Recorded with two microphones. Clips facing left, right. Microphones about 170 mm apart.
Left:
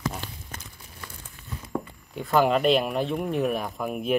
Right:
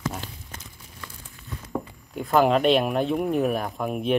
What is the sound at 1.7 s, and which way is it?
Speech, centre (ahead or behind).